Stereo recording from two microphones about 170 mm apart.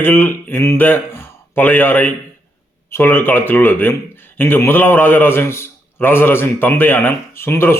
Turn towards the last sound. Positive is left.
turn(degrees=15)  # may be behind; listen again after turning